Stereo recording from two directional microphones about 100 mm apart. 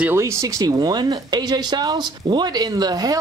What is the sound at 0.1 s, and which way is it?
Speech, 30° right (ahead or behind).